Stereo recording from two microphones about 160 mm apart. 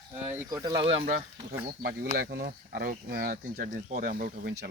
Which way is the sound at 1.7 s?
75° right (ahead or behind).